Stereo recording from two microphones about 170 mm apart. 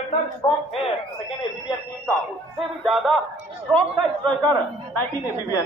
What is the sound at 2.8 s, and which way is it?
Speech, centre (ahead or behind).